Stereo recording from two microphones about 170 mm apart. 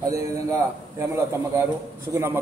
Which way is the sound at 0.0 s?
20° right (ahead or behind).